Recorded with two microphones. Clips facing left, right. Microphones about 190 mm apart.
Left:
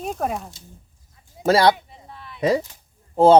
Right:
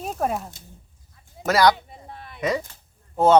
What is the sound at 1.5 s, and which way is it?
Speech, 30° left (ahead or behind).